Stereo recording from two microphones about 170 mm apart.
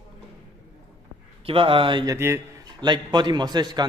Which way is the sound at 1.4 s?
30° right (ahead or behind).